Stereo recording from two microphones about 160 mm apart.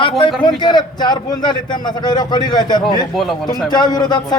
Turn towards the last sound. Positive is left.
turn(degrees=25)  # may be behind; listen again after turning